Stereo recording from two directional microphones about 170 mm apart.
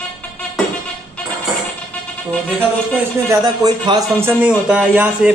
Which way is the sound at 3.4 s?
25° right (ahead or behind).